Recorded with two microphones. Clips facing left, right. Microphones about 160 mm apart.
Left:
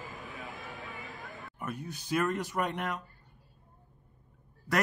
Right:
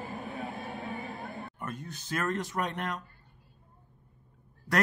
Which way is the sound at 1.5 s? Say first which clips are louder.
Left 1 dB; 10° left (ahead or behind).